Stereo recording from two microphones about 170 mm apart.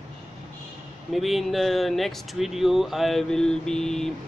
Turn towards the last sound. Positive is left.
turn(degrees=5)  # may be behind; listen again after turning